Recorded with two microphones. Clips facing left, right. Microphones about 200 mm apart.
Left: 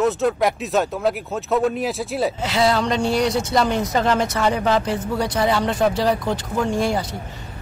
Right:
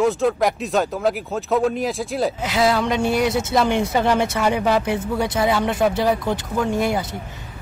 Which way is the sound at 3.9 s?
10° right (ahead or behind).